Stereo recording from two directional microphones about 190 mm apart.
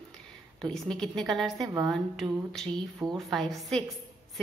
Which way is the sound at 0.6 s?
5° left (ahead or behind).